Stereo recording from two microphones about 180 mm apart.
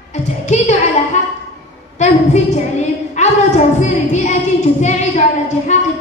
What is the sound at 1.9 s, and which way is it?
A woman's voice, 40° left (ahead or behind).